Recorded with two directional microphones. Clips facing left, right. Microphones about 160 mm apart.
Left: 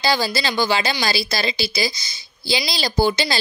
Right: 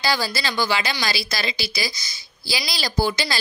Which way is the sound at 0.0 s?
25° left (ahead or behind).